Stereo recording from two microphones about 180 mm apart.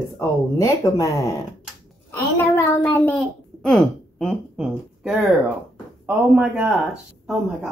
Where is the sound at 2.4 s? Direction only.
15° left (ahead or behind).